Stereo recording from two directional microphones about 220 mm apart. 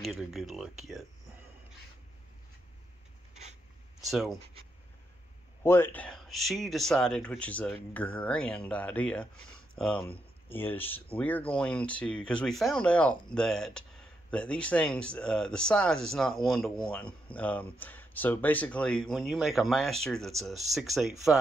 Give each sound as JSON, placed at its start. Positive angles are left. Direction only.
{"t": 0.0, "sound": "speech", "side_deg": 0}
{"t": 4.0, "sound": "speech", "side_deg": 0}
{"t": 5.6, "sound": "speech", "side_deg": 10}